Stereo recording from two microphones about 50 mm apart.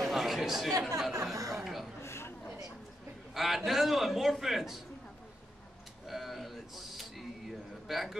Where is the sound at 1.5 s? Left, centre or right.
Centre.